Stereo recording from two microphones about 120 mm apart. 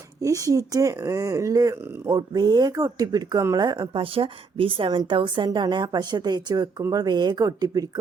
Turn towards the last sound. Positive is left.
turn(degrees=-30)  # may be behind; listen again after turning